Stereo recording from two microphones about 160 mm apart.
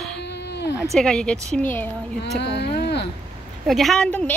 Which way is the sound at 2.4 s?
90° left.